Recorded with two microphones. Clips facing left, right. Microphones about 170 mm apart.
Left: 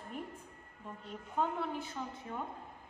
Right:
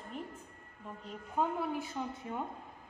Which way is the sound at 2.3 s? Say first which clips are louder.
Right 2 dB; 20° right (ahead or behind).